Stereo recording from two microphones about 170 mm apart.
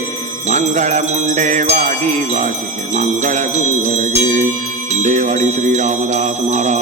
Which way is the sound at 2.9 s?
45° right (ahead or behind).